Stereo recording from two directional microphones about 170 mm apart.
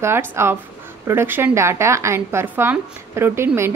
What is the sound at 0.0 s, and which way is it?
A woman's voice, 15° right (ahead or behind).